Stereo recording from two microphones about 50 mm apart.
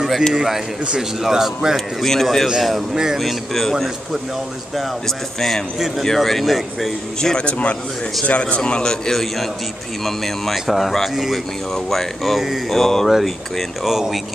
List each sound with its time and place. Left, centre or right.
0.3 s speech: centre
2.0 s a man's voice: centre
2.4 s speech: centre
3.2 s speech: centre
5.0 s speech: centre
7.2 s a man's voice: centre